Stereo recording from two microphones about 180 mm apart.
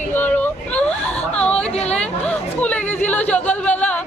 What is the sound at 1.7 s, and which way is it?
Speech, 35° left (ahead or behind).